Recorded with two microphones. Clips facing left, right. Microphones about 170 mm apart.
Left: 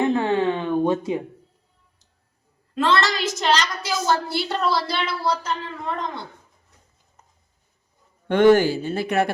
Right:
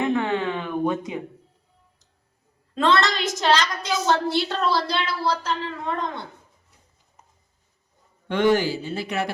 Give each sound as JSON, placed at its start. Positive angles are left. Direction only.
{"t": 0.0, "sound": "a sound", "side_deg": 30}
{"t": 2.7, "sound": "a woman's voice", "side_deg": 5}
{"t": 8.3, "sound": "speech", "side_deg": 50}